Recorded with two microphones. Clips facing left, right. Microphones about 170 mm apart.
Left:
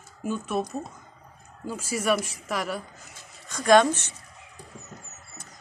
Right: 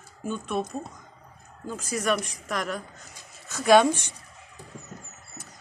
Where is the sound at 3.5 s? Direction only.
5° right (ahead or behind).